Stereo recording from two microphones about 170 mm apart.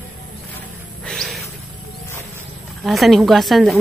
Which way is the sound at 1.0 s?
Centre (ahead or behind).